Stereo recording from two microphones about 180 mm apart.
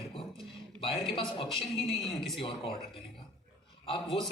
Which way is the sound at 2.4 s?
30° left (ahead or behind).